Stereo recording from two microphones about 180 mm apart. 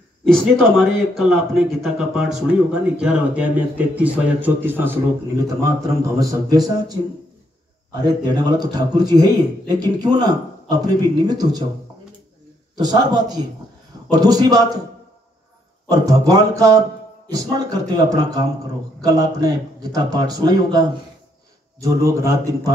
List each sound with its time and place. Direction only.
0.2 s a man's voice: 5° left (ahead or behind); by 7.0 s 20° right (ahead or behind)
8.0 s a man's voice: 25° right (ahead or behind)
12.7 s a man's voice: 25° right (ahead or behind)
15.9 s a man's voice: 20° right (ahead or behind)
21.8 s speech: 15° right (ahead or behind)